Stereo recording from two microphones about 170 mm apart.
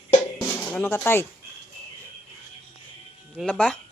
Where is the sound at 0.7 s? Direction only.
5° left (ahead or behind).